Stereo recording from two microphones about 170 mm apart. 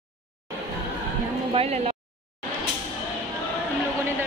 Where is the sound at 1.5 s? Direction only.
35° right (ahead or behind).